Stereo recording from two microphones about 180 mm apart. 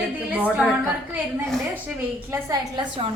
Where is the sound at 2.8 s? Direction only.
30° right (ahead or behind).